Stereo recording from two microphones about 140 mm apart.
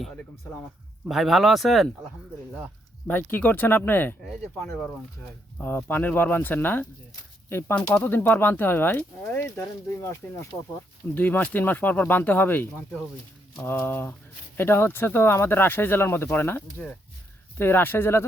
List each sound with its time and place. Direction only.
1.0 s speech: centre (ahead or behind)
3.1 s speech: 15° left (ahead or behind)
4.2 s speech: centre (ahead or behind)